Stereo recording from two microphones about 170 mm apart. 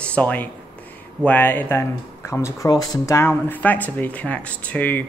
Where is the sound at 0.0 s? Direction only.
10° left (ahead or behind).